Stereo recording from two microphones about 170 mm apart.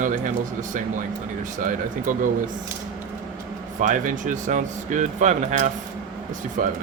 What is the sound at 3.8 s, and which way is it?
Speech, 50° right (ahead or behind).